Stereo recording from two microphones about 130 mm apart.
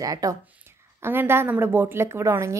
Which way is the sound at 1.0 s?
15° right (ahead or behind).